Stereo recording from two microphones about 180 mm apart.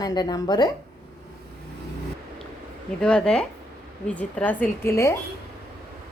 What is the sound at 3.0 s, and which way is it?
A woman's voice, 5° left (ahead or behind).